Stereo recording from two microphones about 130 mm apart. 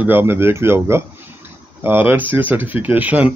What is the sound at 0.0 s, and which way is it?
Speech, 15° right (ahead or behind).